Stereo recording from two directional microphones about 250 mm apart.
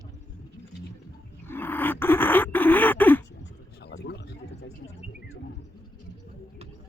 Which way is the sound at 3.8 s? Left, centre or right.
Left.